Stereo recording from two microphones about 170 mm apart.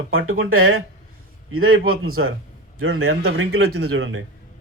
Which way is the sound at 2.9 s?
75° right (ahead or behind).